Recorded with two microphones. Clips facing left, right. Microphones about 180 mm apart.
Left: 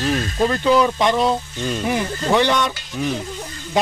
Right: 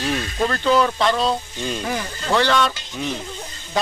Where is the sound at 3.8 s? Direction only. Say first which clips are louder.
Left 3 dB; 20° left (ahead or behind).